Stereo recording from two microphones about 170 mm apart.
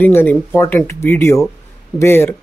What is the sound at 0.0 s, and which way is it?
Speech, 10° left (ahead or behind).